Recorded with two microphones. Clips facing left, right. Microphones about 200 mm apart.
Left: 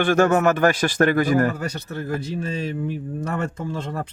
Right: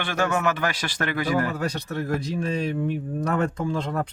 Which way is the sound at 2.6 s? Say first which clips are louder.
Right 1 dB; 65° right (ahead or behind).